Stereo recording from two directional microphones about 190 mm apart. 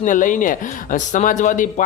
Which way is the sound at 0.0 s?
45° left (ahead or behind).